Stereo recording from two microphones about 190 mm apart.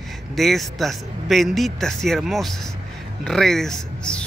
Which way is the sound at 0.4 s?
Centre (ahead or behind).